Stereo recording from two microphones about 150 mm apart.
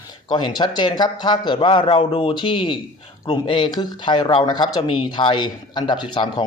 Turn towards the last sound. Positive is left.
turn(degrees=30)  # may be behind; listen again after turning